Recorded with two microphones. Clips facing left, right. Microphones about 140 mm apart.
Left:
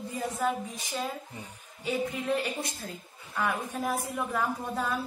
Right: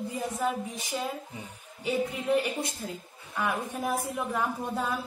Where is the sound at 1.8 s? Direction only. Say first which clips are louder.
Right 1 dB; 15° right (ahead or behind).